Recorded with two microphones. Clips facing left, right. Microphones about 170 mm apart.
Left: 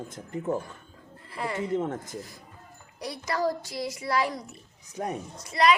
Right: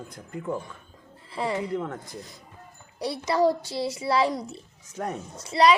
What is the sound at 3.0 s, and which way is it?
A child's voice, 30° right (ahead or behind).